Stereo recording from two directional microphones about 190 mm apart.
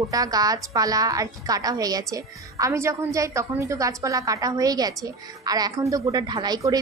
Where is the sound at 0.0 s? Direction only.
20° right (ahead or behind).